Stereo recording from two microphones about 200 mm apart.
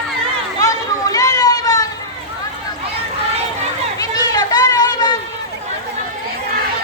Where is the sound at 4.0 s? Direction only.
20° left (ahead or behind).